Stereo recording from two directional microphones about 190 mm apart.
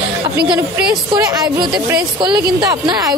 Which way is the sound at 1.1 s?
20° right (ahead or behind).